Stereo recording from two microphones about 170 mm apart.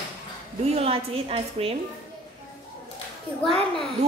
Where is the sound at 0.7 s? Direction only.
35° right (ahead or behind).